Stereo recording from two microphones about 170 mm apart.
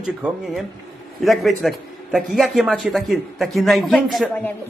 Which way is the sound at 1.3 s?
Centre (ahead or behind).